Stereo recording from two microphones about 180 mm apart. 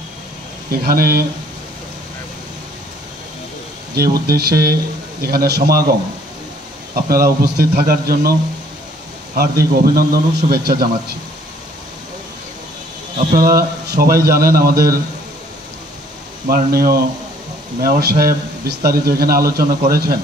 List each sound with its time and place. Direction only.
0.7 s a man's voice: 55° right (ahead or behind)
3.9 s a man's voice: 55° right (ahead or behind)
7.1 s a man's voice: 55° right (ahead or behind)
13.6 s a man's voice: 55° right (ahead or behind)
16.4 s a man's voice: 55° right (ahead or behind)